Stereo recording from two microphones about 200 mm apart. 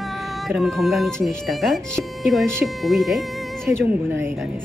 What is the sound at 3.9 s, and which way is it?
Speech, 10° right (ahead or behind).